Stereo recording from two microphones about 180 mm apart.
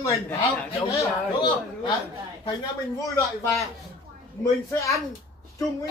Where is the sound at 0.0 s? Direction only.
15° left (ahead or behind).